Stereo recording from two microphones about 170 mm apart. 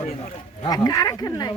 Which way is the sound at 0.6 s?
20° left (ahead or behind).